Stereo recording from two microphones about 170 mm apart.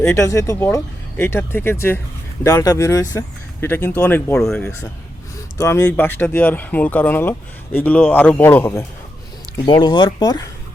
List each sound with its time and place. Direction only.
0.0 s speech: 15° left (ahead or behind)
5.5 s speech: 15° left (ahead or behind)
9.6 s speech: 25° left (ahead or behind)